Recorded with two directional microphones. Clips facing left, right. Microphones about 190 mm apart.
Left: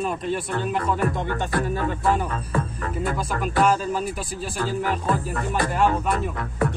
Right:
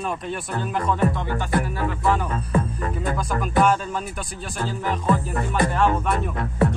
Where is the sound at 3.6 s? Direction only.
Centre (ahead or behind).